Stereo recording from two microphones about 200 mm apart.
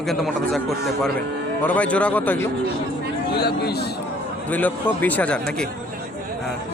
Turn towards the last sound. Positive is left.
turn(degrees=5)  # may be behind; listen again after turning